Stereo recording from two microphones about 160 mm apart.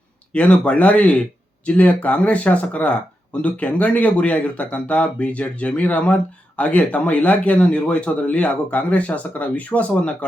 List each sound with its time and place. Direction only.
0.3 s speech: 5° left (ahead or behind)